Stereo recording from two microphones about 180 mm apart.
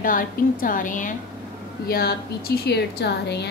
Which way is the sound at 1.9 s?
60° left (ahead or behind).